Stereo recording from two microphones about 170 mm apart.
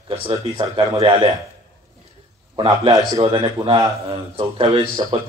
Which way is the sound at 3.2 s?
30° right (ahead or behind).